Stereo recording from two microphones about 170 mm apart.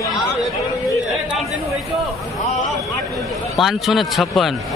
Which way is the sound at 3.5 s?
Centre (ahead or behind).